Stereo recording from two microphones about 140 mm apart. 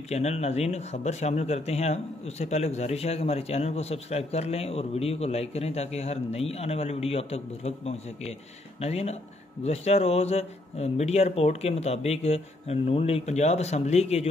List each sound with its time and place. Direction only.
0.1 s speech: 50° left (ahead or behind)